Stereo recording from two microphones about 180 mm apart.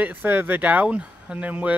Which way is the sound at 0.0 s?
10° right (ahead or behind).